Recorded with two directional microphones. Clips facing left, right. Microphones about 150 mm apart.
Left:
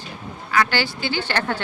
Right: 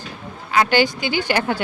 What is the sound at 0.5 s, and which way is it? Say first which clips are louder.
A woman's voice: right 4 dB; 20° right (ahead or behind).